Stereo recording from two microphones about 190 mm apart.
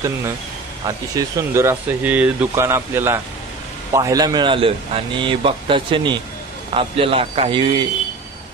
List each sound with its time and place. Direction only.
0.8 s a man's voice: 20° right (ahead or behind)